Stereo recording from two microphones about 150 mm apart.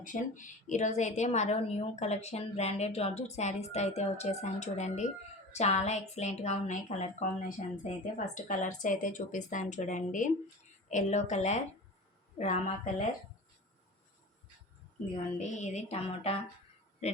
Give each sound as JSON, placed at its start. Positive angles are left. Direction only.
{"t": 0.0, "sound": "a woman's voice", "side_deg": 60}
{"t": 15.4, "sound": "a woman's voice", "side_deg": 50}